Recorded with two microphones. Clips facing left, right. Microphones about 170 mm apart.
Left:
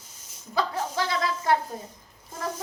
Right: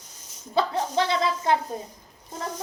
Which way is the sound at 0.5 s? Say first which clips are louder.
Right 4 dB; 25° right (ahead or behind).